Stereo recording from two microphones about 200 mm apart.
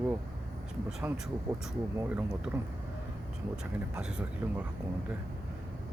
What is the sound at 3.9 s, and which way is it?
Speech, 5° right (ahead or behind).